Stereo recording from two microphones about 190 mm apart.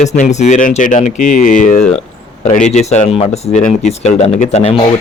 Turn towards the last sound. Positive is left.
turn(degrees=35)  # may be behind; listen again after turning